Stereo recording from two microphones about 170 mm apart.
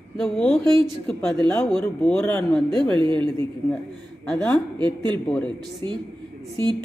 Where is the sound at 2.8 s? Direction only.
30° right (ahead or behind).